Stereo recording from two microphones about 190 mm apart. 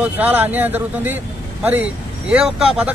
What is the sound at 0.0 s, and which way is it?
Speech, 10° right (ahead or behind).